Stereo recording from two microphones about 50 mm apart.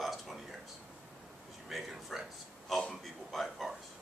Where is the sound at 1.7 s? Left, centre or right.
Centre.